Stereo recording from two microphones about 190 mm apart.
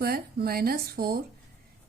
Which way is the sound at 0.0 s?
55° right (ahead or behind).